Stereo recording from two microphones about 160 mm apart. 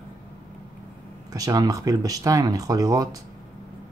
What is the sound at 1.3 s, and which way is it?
Speech, 20° right (ahead or behind).